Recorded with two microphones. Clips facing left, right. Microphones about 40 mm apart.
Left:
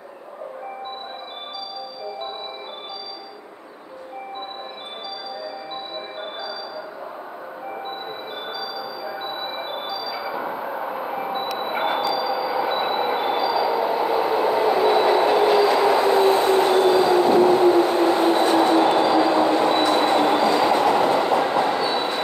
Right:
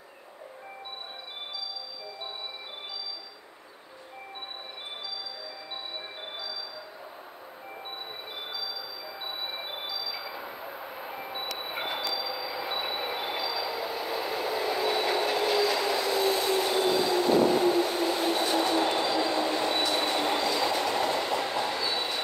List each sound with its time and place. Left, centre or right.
8.5 s a sound: centre
10.3 s vehicle: left
12.2 s train: centre